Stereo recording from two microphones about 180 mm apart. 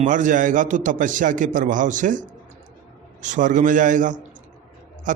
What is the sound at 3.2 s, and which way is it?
A man's voice, 45° right (ahead or behind).